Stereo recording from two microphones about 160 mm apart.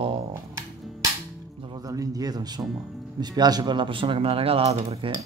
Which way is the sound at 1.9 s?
20° right (ahead or behind).